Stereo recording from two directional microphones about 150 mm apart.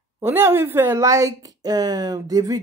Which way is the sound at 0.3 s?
15° right (ahead or behind).